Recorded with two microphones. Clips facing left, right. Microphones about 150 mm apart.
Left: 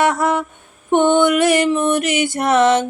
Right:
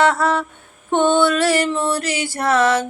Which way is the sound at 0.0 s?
20° left (ahead or behind).